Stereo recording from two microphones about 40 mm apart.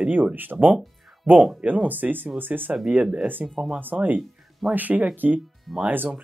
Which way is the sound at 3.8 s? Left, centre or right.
Right.